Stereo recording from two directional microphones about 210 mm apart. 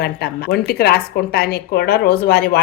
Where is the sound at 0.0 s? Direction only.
50° left (ahead or behind).